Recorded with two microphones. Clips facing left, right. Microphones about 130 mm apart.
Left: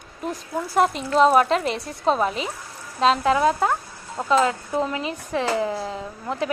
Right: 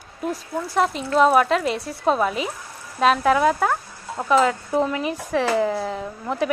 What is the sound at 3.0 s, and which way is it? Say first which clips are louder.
Speech: right 1 dB; 20° left (ahead or behind).